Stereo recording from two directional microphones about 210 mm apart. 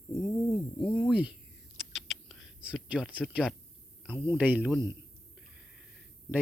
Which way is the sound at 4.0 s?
5° right (ahead or behind).